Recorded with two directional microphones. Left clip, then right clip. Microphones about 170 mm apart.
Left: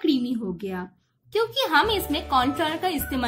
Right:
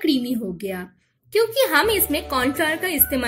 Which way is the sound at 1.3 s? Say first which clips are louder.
Right 3 dB; 10° right (ahead or behind).